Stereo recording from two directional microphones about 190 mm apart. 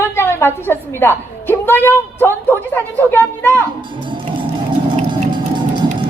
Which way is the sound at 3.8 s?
25° right (ahead or behind).